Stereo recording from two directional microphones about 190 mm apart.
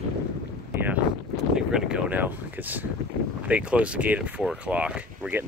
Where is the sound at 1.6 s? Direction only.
5° right (ahead or behind).